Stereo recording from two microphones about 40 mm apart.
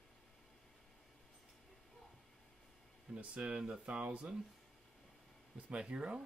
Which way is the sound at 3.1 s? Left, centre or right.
Right.